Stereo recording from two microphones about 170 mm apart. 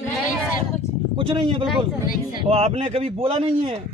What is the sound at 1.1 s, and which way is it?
A man's voice, 30° right (ahead or behind).